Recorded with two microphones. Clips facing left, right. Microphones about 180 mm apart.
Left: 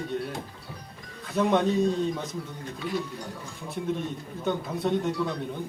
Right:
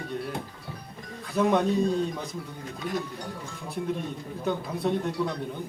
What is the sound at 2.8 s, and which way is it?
Speech, 45° right (ahead or behind).